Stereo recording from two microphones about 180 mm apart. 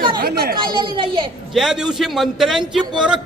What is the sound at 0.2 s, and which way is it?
Speech, 55° right (ahead or behind).